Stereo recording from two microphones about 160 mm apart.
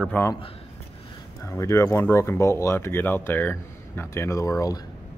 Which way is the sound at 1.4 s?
20° left (ahead or behind).